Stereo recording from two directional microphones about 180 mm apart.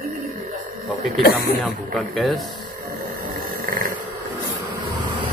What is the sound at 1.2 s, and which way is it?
Speech, 55° left (ahead or behind).